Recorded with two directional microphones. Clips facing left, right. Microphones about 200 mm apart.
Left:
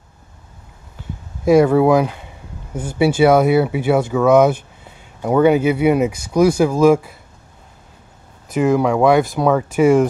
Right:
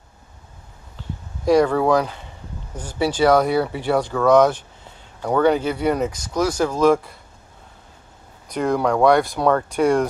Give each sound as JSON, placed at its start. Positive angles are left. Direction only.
{"t": 1.4, "sound": "speech", "side_deg": 5}
{"t": 8.5, "sound": "speech", "side_deg": 5}